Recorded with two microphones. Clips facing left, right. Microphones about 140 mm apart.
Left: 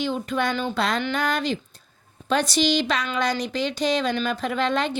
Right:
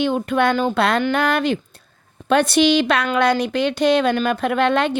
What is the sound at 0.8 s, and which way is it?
A woman's voice, 65° right (ahead or behind).